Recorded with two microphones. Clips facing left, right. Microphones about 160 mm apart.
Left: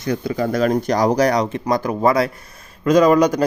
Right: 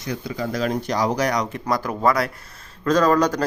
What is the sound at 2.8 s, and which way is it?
Speech, 10° left (ahead or behind).